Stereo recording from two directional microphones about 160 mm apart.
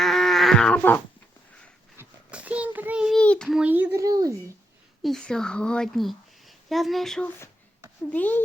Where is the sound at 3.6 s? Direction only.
10° right (ahead or behind).